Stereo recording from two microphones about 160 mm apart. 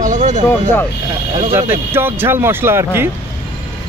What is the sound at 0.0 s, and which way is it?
Speech, 50° right (ahead or behind).